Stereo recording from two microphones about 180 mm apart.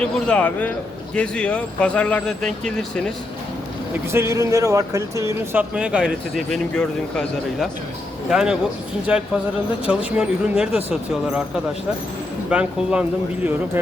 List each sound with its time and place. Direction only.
0.0 s speech: 5° left (ahead or behind)
4.1 s speech: 15° right (ahead or behind)
5.7 s speech: 5° right (ahead or behind)